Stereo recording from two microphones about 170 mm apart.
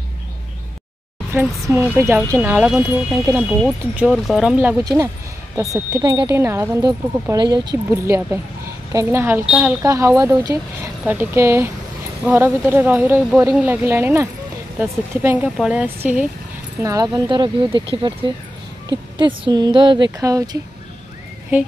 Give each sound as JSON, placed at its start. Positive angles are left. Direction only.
{"t": 1.7, "sound": "speech", "side_deg": -15}
{"t": 7.9, "sound": "speech", "side_deg": -15}
{"t": 9.8, "sound": "speech", "side_deg": -20}
{"t": 16.8, "sound": "speech", "side_deg": -20}
{"t": 21.5, "sound": "speech", "side_deg": -10}